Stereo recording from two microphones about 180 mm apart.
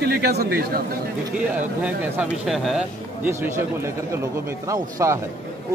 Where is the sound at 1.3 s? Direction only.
5° right (ahead or behind).